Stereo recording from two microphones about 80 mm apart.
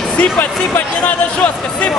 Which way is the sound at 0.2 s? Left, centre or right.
Left.